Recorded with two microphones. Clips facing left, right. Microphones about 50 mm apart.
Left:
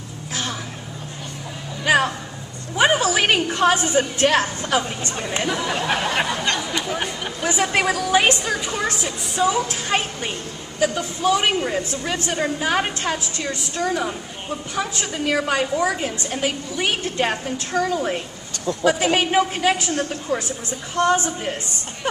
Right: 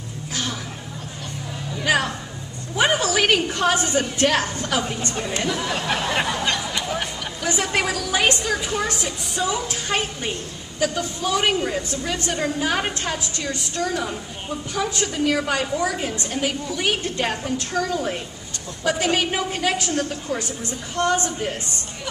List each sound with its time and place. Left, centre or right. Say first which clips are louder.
1.9 s a woman's voice: left 3 dB; centre
6.4 s a sound: left 1 dB; centre
7.0 s a woman's voice: left 2 dB; centre
19.9 s a woman's voice: left 1 dB; left